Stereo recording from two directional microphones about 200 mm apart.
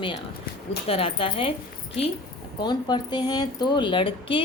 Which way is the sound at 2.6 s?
20° left (ahead or behind).